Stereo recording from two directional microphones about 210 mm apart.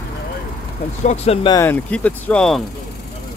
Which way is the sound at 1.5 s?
10° left (ahead or behind).